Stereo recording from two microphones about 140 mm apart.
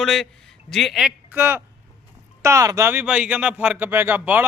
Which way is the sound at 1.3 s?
15° right (ahead or behind).